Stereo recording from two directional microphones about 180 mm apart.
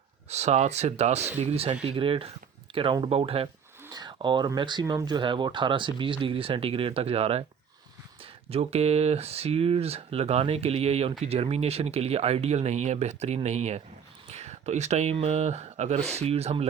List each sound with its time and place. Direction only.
0.3 s speech: 40° right (ahead or behind)